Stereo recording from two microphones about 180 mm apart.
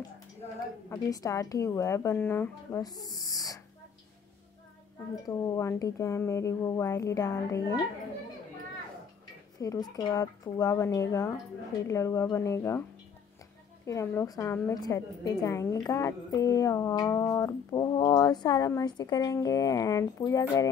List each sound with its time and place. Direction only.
0.8 s a woman's voice: 20° left (ahead or behind)
5.2 s a woman's voice: 20° left (ahead or behind)
9.6 s a woman's voice: 20° left (ahead or behind)
13.8 s a woman's voice: 15° left (ahead or behind)